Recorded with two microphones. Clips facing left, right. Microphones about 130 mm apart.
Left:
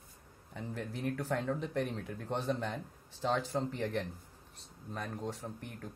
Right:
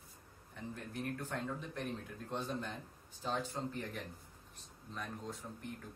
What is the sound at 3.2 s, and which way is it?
Speech, 90° left.